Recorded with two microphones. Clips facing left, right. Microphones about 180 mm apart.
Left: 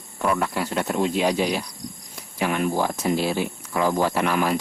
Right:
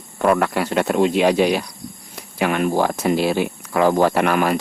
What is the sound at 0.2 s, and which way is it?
Speech, 75° right (ahead or behind).